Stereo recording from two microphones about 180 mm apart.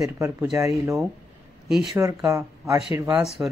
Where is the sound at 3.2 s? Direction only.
Centre (ahead or behind).